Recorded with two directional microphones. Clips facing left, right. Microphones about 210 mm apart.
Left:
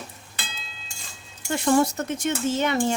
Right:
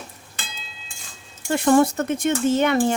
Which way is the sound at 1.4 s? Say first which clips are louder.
Right 4 dB; 55° right (ahead or behind).